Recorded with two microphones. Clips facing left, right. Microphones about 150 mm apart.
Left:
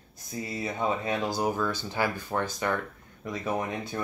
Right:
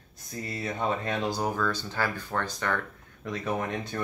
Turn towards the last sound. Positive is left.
turn(degrees=5)  # may be behind; listen again after turning